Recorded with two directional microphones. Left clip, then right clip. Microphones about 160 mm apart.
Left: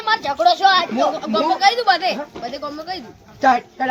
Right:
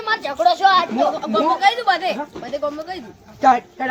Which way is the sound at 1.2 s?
15° left (ahead or behind).